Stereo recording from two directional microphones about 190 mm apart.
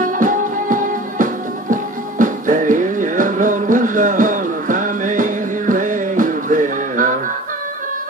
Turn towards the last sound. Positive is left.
turn(degrees=-45)  # may be behind; listen again after turning